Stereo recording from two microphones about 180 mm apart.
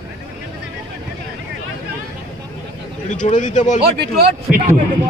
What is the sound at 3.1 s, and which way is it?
Speech, 45° left (ahead or behind).